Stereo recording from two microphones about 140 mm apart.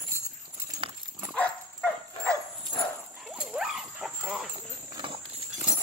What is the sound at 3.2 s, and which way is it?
Dog, 5° right (ahead or behind).